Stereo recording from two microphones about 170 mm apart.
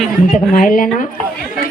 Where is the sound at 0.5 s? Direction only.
55° left (ahead or behind).